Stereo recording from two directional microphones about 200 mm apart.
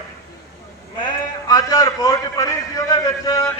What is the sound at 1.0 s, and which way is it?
A man's voice, 15° left (ahead or behind).